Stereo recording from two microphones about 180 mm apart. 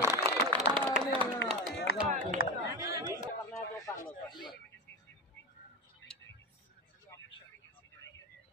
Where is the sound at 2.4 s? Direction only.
55° left (ahead or behind).